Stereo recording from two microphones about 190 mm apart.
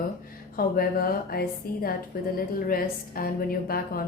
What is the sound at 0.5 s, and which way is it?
A woman's voice, 50° left (ahead or behind).